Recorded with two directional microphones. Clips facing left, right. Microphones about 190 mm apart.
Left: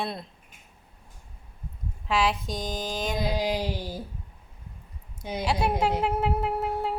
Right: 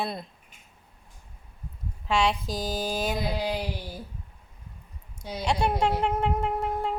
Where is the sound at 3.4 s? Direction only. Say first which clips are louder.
Left 2 dB; 15° left (ahead or behind).